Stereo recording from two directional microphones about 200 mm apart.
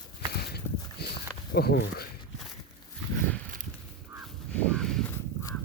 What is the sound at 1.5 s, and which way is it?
Speech, 60° left (ahead or behind).